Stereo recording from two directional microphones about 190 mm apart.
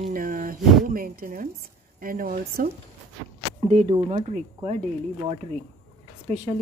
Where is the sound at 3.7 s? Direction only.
35° right (ahead or behind).